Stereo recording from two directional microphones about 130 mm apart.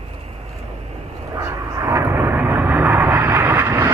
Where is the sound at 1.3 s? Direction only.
25° right (ahead or behind).